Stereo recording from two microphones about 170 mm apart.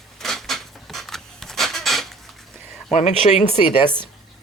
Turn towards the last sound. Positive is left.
turn(degrees=25)  # may be behind; listen again after turning